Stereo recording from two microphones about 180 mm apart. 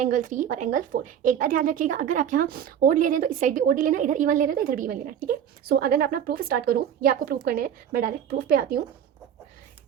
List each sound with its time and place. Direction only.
0.0 s a woman's voice: 45° right (ahead or behind)